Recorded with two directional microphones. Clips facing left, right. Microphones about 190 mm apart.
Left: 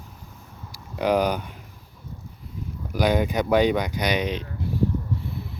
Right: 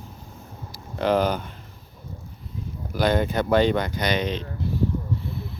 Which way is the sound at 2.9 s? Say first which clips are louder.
Even; 15° left (ahead or behind).